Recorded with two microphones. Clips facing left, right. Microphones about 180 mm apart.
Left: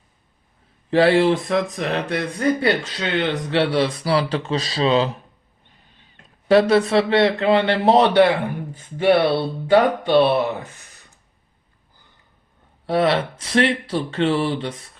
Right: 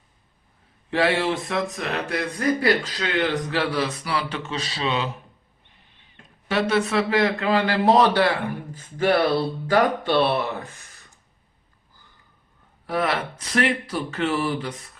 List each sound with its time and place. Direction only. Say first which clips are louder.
0.9 s speech: left 7 dB; 35° left (ahead or behind)
6.5 s speech: left 7 dB; 35° left (ahead or behind); by 10.7 s 20° left (ahead or behind)
12.8 s speech: left 6 dB; 30° left (ahead or behind)